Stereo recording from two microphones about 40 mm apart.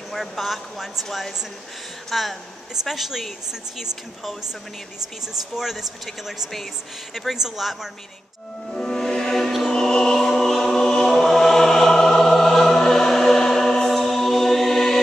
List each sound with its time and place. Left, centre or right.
0.1 s speech: centre
5.3 s speech: centre
7.2 s speech: centre
8.7 s music: centre
10.1 s choir: centre